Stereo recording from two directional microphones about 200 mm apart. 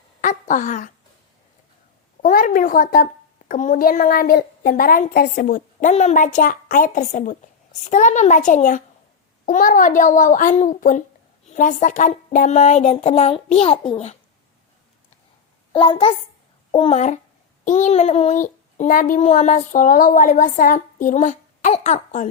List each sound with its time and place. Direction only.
0.2 s a sound: 40° left (ahead or behind)
2.2 s a woman's voice: 45° left (ahead or behind)
15.7 s a child's voice: 25° left (ahead or behind)